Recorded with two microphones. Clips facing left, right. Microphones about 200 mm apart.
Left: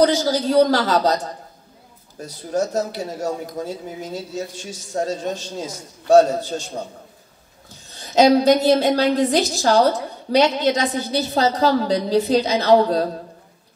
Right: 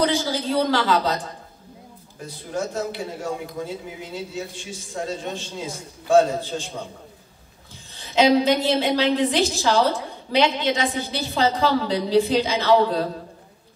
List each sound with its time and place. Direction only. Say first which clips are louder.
0.0 s a woman's voice: left 5 dB; 40° left (ahead or behind)